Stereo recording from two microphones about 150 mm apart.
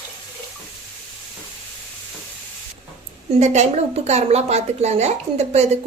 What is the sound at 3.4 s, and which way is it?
Speech, 50° right (ahead or behind).